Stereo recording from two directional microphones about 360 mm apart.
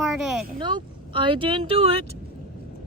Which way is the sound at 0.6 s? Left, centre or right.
Centre.